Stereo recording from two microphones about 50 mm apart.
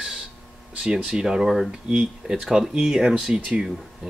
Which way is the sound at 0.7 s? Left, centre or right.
Centre.